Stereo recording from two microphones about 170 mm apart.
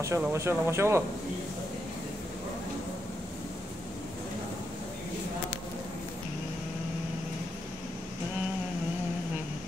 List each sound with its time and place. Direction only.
0.0 s speech: 15° right (ahead or behind)